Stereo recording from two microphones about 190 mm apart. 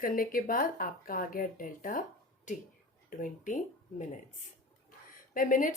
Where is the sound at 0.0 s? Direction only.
50° left (ahead or behind).